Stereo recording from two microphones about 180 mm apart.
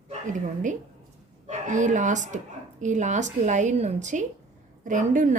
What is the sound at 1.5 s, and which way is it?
A woman's voice, 45° right (ahead or behind).